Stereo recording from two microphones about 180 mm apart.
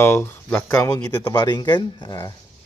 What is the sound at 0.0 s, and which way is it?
Speech, 15° left (ahead or behind).